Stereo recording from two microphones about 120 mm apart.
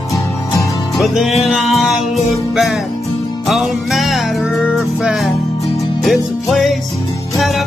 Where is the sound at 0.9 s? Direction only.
Centre (ahead or behind).